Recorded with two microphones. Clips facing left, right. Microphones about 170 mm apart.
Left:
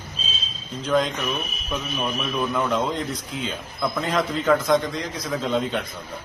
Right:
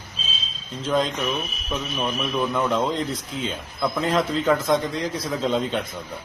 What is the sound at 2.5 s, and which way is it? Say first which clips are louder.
Speech: even; centre (ahead or behind).